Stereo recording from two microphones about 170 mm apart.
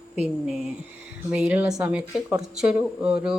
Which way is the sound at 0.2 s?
5° right (ahead or behind).